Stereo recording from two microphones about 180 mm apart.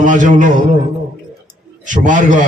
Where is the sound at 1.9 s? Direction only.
45° right (ahead or behind).